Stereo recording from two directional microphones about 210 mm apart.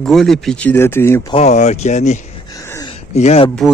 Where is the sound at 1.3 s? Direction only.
30° left (ahead or behind).